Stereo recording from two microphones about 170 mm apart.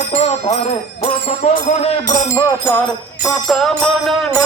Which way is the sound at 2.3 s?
15° left (ahead or behind).